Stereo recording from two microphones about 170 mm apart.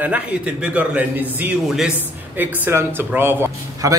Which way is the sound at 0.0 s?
10° right (ahead or behind).